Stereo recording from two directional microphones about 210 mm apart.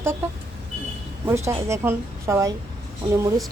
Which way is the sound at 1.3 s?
15° right (ahead or behind).